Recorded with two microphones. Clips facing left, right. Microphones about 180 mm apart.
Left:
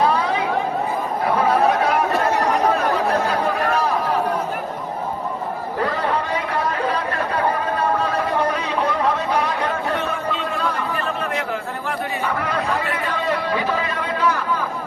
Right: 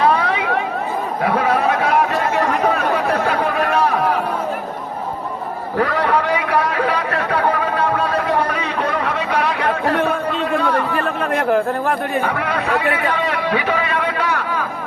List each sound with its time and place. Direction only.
0.0 s a sound: 65° right (ahead or behind)
1.2 s chatter: 70° right (ahead or behind)
3.2 s chatter: 65° right (ahead or behind)
5.8 s chatter: 75° right (ahead or behind)